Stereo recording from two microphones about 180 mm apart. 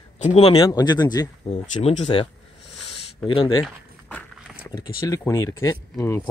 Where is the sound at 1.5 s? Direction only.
35° left (ahead or behind).